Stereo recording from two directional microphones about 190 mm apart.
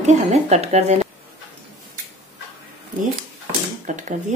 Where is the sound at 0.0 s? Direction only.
35° right (ahead or behind).